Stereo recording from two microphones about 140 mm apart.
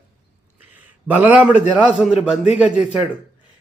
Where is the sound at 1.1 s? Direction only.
10° right (ahead or behind).